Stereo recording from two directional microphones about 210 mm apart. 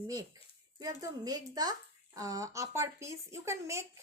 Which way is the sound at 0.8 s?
15° right (ahead or behind).